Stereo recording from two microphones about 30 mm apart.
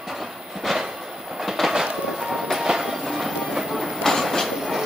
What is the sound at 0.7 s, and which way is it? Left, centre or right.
Train, centre.